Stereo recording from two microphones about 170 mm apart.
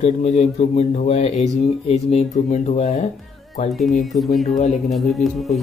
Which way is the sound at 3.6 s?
Centre (ahead or behind).